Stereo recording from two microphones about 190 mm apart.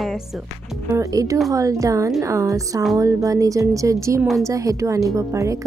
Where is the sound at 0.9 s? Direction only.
15° right (ahead or behind).